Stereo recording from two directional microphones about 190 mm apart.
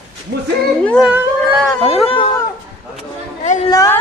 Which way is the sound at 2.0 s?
30° left (ahead or behind).